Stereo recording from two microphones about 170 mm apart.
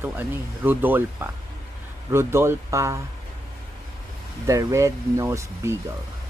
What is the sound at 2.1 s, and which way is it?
Speech, 15° right (ahead or behind).